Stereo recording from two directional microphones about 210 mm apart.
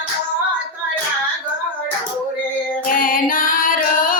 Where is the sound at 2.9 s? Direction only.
40° left (ahead or behind).